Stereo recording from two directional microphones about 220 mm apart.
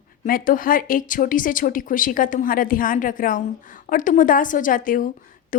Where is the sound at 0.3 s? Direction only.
40° left (ahead or behind).